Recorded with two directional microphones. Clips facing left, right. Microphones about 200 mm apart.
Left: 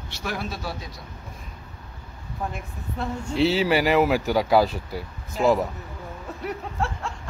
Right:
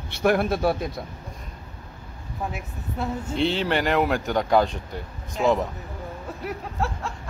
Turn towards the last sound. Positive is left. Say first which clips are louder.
# even
turn(degrees=0)  # may be behind; listen again after turning